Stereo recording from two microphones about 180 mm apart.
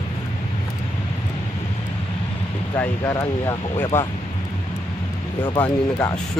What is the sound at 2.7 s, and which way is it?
Speech, 15° left (ahead or behind).